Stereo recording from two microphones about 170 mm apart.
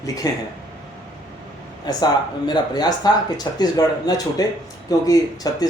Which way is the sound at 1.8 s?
25° left (ahead or behind).